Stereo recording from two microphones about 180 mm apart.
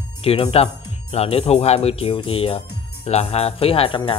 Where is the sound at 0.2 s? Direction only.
35° left (ahead or behind).